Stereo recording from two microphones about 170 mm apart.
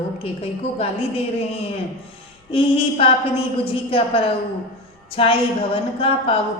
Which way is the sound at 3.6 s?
30° left (ahead or behind).